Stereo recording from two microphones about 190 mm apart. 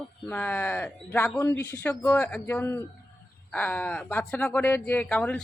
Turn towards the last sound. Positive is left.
turn(degrees=5)  # may be behind; listen again after turning